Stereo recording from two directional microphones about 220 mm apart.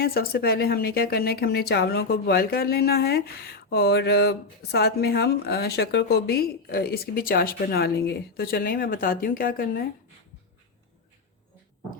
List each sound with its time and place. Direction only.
0.0 s speech: 45° left (ahead or behind)